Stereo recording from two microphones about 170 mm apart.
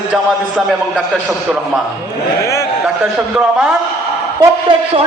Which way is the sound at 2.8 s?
5° right (ahead or behind).